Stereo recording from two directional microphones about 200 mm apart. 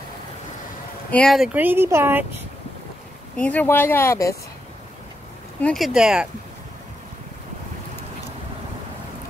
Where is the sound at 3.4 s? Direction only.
10° left (ahead or behind).